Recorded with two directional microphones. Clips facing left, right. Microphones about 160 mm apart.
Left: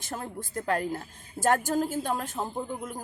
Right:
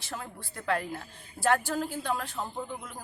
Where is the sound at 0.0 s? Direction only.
45° left (ahead or behind).